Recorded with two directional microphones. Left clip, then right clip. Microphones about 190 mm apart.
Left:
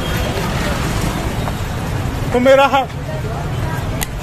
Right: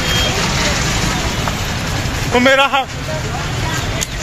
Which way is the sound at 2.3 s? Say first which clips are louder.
Left 1 dB; 10° left (ahead or behind).